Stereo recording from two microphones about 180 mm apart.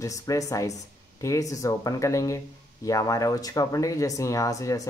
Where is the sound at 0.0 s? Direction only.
20° left (ahead or behind).